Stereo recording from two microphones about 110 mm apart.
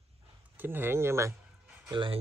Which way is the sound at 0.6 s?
20° right (ahead or behind).